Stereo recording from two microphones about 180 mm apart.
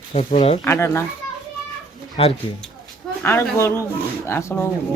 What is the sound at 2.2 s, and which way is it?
Speech, 30° left (ahead or behind).